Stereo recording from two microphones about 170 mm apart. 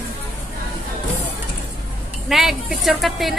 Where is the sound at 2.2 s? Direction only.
Centre (ahead or behind).